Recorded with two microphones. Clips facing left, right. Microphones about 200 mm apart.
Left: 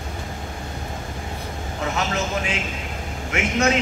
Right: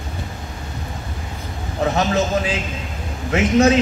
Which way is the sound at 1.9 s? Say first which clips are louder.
Right 6 dB; 35° right (ahead or behind).